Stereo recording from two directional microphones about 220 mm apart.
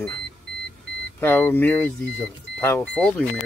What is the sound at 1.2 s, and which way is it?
Speech, 10° left (ahead or behind).